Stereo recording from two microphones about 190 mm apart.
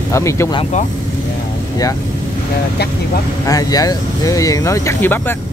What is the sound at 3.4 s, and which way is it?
Speech, 20° left (ahead or behind).